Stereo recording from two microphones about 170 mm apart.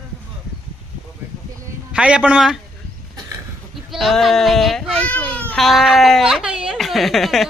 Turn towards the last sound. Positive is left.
turn(degrees=0)  # may be behind; listen again after turning